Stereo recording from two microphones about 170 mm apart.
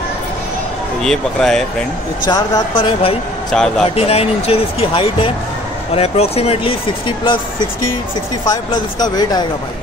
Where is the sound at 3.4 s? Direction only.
5° left (ahead or behind).